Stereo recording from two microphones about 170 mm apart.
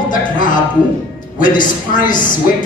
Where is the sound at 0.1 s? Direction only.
50° left (ahead or behind).